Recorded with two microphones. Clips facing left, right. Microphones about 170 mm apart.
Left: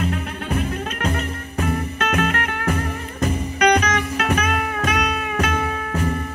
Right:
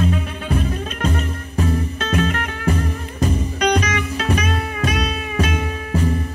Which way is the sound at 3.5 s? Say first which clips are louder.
Left 3 dB; 60° left (ahead or behind).